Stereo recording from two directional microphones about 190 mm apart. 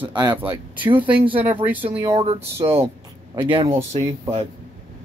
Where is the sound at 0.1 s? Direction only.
25° right (ahead or behind).